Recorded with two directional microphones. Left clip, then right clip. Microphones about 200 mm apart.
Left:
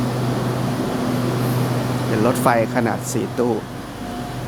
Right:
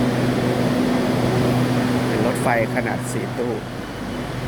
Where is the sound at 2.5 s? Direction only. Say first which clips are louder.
Left 3 dB; 30° left (ahead or behind).